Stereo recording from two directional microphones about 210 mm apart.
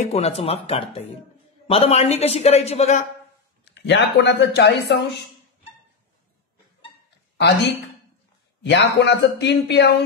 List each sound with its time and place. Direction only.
0.0 s a man's voice: 30° left (ahead or behind)
3.6 s speech: 55° left (ahead or behind)
8.6 s a man's voice: 55° left (ahead or behind)